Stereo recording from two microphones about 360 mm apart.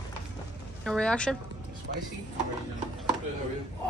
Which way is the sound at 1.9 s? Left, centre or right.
Right.